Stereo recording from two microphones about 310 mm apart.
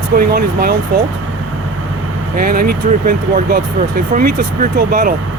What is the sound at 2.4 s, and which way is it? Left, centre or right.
Speech, right.